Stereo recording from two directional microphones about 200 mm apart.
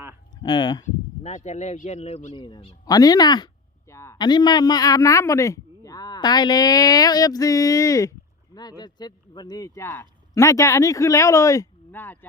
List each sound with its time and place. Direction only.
0.4 s a man's voice: 20° left (ahead or behind)
1.2 s a man's voice: 35° left (ahead or behind); by 12.2 s 10° left (ahead or behind)